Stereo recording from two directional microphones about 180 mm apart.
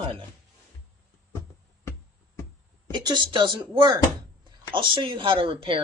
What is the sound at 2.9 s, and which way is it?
Speech, 25° right (ahead or behind).